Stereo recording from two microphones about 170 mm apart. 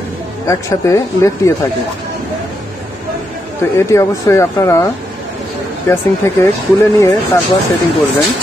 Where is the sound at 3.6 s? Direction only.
15° left (ahead or behind).